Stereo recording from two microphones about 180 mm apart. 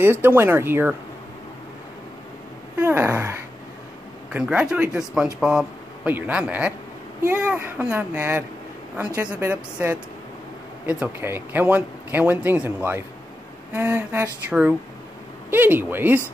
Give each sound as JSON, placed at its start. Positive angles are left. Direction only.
{"t": 0.0, "sound": "speech", "side_deg": -10}
{"t": 2.8, "sound": "speech", "side_deg": -10}